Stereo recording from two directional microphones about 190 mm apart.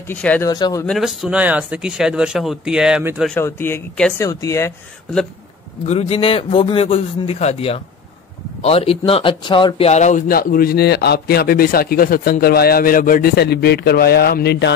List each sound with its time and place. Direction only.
0.1 s speech: 10° left (ahead or behind)
0.5 s speech: 20° left (ahead or behind)
0.8 s speech: centre (ahead or behind)
3.3 s speech: 10° left (ahead or behind)
5.9 s a man's voice: 30° left (ahead or behind); by 14.7 s 60° left (ahead or behind)